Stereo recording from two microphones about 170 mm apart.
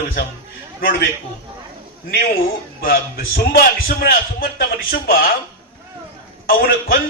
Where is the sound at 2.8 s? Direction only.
60° left (ahead or behind).